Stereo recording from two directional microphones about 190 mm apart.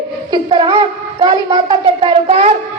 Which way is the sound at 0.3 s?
25° right (ahead or behind).